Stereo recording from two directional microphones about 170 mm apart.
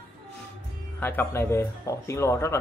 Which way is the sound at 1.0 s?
10° left (ahead or behind).